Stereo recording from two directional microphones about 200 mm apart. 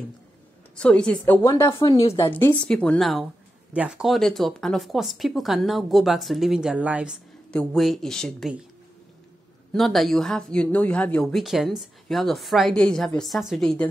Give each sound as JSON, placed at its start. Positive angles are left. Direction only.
{"t": 0.7, "sound": "speech", "side_deg": 5}
{"t": 1.7, "sound": "speech", "side_deg": 20}
{"t": 9.7, "sound": "speech", "side_deg": 0}